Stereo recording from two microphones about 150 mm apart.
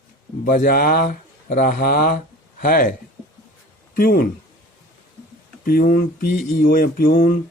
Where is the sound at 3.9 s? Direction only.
75° left (ahead or behind).